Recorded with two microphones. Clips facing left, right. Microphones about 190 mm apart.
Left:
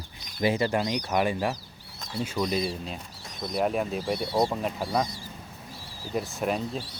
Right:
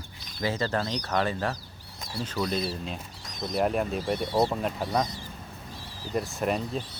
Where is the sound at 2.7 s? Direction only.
5° right (ahead or behind).